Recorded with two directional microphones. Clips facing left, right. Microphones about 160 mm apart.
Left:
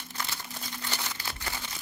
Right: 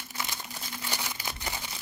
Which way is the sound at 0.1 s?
15° right (ahead or behind).